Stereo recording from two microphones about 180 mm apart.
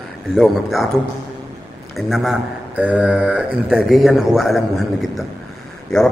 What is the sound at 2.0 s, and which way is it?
A man's voice, centre (ahead or behind).